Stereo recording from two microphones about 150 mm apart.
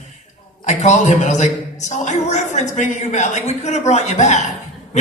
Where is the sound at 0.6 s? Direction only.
50° left (ahead or behind).